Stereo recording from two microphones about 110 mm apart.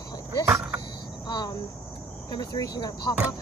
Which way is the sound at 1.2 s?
40° left (ahead or behind).